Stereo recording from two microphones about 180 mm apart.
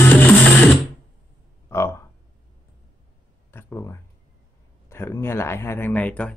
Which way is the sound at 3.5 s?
15° left (ahead or behind).